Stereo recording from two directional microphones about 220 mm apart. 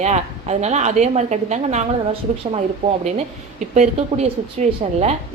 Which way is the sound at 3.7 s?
30° right (ahead or behind).